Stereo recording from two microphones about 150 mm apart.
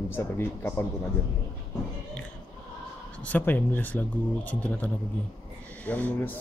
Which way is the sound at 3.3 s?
10° left (ahead or behind).